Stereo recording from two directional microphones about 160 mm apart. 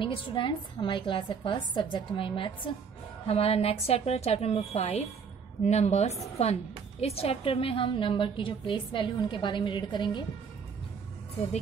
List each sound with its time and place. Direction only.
0.0 s a woman's voice: 30° left (ahead or behind)